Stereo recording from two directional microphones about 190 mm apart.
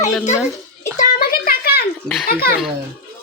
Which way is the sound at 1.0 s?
50° left (ahead or behind).